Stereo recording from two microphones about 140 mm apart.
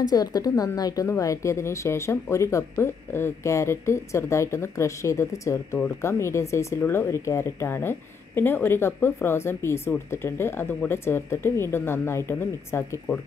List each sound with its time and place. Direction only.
0.1 s speech: 25° left (ahead or behind)